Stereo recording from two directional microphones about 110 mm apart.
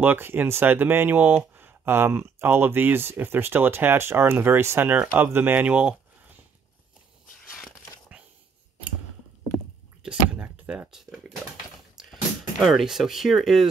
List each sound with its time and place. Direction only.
0.0 s speech: 20° right (ahead or behind)
10.0 s a sound: 10° right (ahead or behind)
12.0 s speech: centre (ahead or behind)